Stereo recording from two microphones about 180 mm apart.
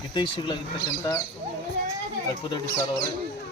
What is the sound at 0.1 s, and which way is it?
Speech, 25° left (ahead or behind).